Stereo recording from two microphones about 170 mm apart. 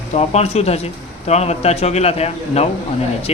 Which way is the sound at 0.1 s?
40° left (ahead or behind).